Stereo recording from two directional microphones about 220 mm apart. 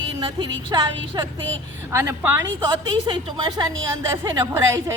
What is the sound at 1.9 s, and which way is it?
A woman's voice, 15° right (ahead or behind).